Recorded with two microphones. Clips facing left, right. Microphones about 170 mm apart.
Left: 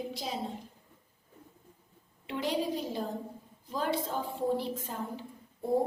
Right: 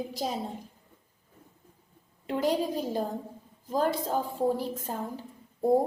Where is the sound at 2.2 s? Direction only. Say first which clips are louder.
Right 4 dB; 45° right (ahead or behind).